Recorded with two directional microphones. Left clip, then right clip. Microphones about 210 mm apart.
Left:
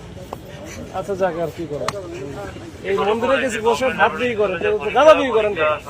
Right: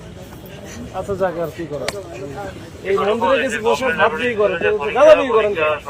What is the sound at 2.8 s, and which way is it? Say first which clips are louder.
A man's voice: right 2 dB; centre (ahead or behind).